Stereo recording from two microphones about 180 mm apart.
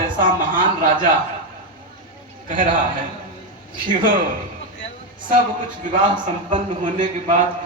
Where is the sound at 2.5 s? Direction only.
45° right (ahead or behind).